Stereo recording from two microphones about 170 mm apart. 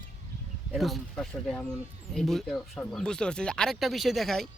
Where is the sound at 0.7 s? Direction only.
Centre (ahead or behind).